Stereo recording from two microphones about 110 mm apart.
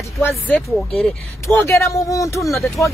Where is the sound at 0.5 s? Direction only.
10° left (ahead or behind).